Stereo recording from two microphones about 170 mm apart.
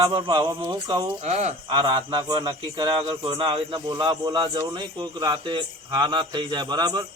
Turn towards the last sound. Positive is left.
turn(degrees=-25)  # may be behind; listen again after turning